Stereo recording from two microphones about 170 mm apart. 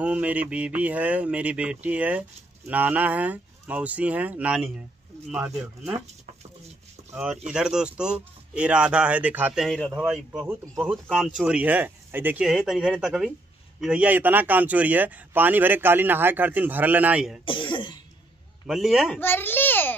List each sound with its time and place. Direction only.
0.0 s speech: 10° right (ahead or behind)
7.2 s speech: 5° right (ahead or behind)
17.5 s cough: 30° left (ahead or behind)
18.7 s speech: centre (ahead or behind)
19.1 s a sound: 10° left (ahead or behind)